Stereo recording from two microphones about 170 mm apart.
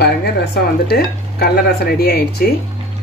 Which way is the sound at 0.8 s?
70° left (ahead or behind).